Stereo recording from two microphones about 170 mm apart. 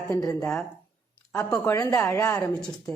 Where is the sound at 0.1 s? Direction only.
20° left (ahead or behind).